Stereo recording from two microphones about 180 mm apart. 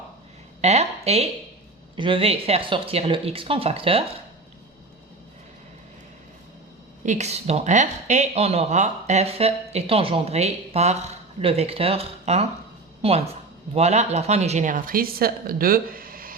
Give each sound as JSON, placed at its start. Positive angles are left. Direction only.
{"t": 0.6, "sound": "speech", "side_deg": -35}
{"t": 7.0, "sound": "speech", "side_deg": -40}